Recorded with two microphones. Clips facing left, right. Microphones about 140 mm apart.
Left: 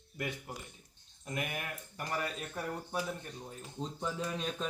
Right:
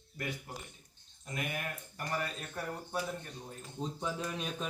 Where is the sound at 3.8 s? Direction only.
Centre (ahead or behind).